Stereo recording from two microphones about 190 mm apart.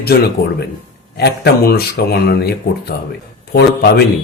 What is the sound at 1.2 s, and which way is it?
Speech, 55° left (ahead or behind).